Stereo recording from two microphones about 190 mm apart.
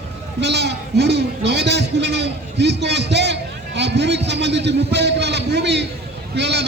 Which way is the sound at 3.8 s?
65° right (ahead or behind).